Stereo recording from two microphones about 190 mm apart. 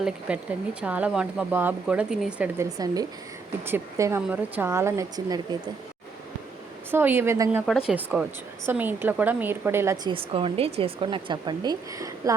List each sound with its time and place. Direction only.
0.0 s speech: 5° right (ahead or behind)
2.6 s speech: 20° right (ahead or behind)
6.9 s speech: 10° right (ahead or behind)
10.1 s speech: 30° right (ahead or behind)